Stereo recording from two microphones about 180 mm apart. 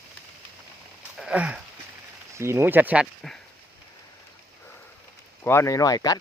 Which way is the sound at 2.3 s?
15° right (ahead or behind).